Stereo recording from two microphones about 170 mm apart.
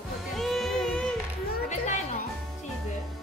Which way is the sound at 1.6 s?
45° left (ahead or behind).